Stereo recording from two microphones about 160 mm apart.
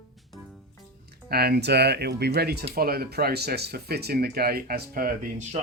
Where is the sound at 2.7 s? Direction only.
70° right (ahead or behind).